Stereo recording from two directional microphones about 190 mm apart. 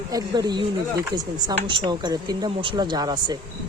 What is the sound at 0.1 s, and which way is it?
Speech, 20° right (ahead or behind).